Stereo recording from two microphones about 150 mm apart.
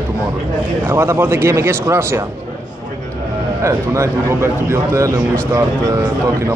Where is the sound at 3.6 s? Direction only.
20° right (ahead or behind).